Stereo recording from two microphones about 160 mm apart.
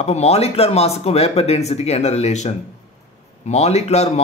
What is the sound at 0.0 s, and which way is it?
Speech, 40° left (ahead or behind).